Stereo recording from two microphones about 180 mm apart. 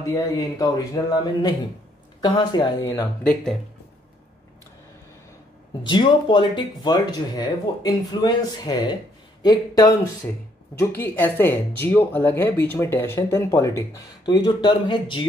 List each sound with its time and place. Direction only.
0.0 s speech: 20° left (ahead or behind)
5.9 s speech: 25° left (ahead or behind)